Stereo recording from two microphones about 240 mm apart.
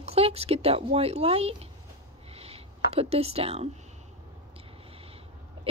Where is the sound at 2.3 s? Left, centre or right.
Right.